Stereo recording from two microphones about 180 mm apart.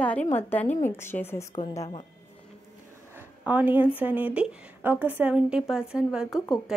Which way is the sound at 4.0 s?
10° right (ahead or behind).